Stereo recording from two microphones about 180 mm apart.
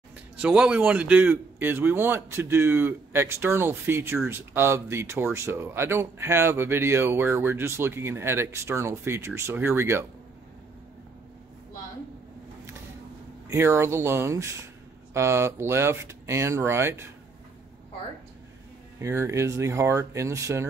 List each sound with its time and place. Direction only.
0.4 s speech: 5° right (ahead or behind)
13.5 s speech: 15° right (ahead or behind)
18.9 s speech: 15° right (ahead or behind)